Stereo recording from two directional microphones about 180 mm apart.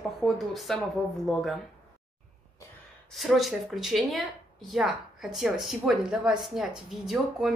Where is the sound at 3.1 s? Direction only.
Centre (ahead or behind).